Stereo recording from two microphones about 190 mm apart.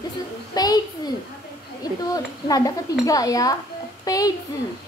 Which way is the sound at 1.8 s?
20° left (ahead or behind).